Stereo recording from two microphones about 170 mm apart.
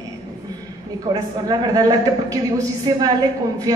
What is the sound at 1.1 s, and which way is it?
Speech, 30° right (ahead or behind).